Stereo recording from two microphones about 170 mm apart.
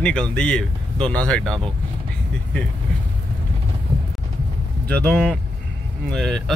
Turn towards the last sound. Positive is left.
turn(degrees=5)  # may be behind; listen again after turning